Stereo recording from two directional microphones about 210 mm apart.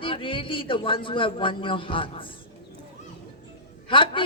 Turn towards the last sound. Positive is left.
turn(degrees=25)  # may be behind; listen again after turning